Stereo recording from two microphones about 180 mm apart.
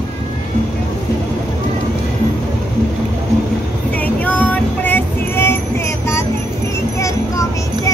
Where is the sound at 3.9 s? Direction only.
10° left (ahead or behind).